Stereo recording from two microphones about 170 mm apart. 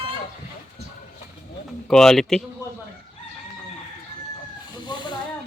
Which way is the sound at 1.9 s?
5° left (ahead or behind).